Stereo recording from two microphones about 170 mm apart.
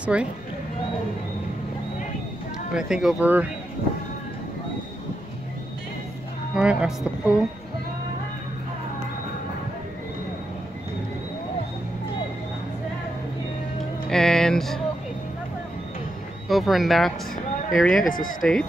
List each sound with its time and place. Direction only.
0.0 s speech: 5° right (ahead or behind)
2.7 s speech: 5° right (ahead or behind)
6.5 s speech: 5° right (ahead or behind)
14.0 s music: 5° left (ahead or behind)
16.4 s speech: centre (ahead or behind)